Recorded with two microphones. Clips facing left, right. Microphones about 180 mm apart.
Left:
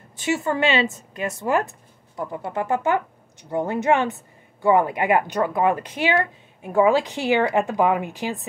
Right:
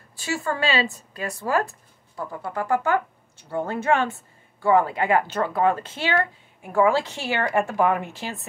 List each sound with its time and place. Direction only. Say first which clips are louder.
0.1 s speech: left 4 dB; 20° left (ahead or behind)